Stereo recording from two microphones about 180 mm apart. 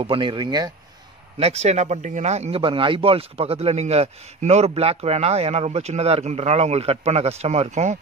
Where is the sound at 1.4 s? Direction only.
35° right (ahead or behind).